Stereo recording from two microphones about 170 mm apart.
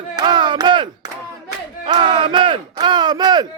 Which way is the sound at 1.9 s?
30° right (ahead or behind).